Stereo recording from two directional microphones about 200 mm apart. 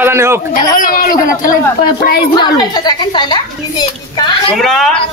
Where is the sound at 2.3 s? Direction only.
20° left (ahead or behind).